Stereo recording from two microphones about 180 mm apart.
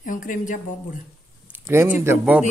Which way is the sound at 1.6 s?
10° right (ahead or behind).